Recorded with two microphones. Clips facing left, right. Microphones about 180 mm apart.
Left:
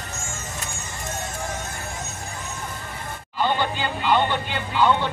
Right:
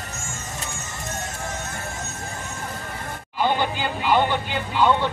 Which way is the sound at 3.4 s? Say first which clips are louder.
Right 1 dB; 10° right (ahead or behind).